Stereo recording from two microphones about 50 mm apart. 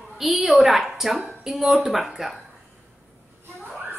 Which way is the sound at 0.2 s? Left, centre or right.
Centre.